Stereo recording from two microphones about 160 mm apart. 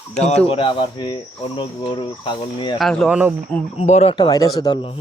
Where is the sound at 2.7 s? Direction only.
Centre (ahead or behind).